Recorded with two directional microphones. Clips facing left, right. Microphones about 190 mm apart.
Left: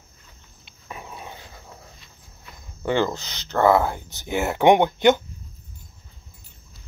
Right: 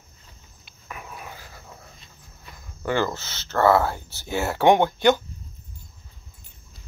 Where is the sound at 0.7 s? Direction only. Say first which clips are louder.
Left 1 dB; 25° left (ahead or behind).